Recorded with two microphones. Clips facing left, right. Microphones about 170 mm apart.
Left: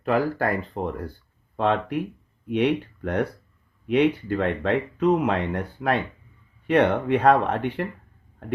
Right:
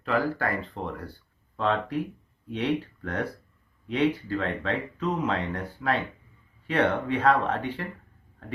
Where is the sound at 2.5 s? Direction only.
60° left (ahead or behind).